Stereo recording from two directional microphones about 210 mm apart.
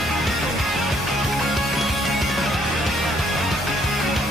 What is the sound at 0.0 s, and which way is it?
Music, centre (ahead or behind).